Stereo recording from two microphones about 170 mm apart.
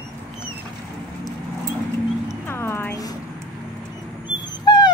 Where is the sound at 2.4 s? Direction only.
15° left (ahead or behind).